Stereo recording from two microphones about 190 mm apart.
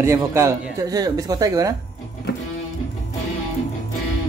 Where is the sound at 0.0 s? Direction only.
15° right (ahead or behind).